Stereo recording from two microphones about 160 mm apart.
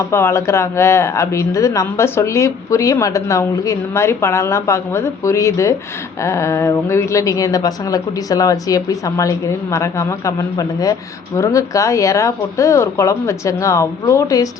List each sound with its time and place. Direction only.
0.0 s speech: 15° left (ahead or behind)